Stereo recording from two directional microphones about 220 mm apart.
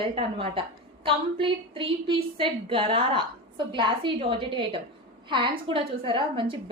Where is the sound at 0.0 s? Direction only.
25° right (ahead or behind).